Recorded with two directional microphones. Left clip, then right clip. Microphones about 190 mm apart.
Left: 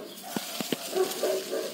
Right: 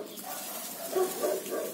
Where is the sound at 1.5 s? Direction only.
30° left (ahead or behind).